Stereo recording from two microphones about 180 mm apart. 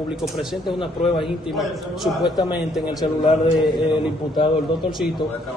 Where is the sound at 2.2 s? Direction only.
25° left (ahead or behind).